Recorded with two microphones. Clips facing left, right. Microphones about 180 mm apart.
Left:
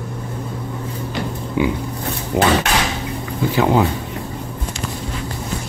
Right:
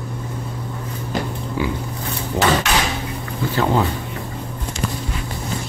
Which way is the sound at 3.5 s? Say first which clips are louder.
Left 3 dB; 15° left (ahead or behind).